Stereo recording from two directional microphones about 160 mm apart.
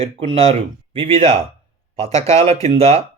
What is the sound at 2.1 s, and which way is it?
Speech, 20° left (ahead or behind).